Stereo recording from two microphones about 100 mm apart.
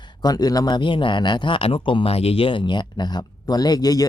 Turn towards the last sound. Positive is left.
turn(degrees=40)  # may be behind; listen again after turning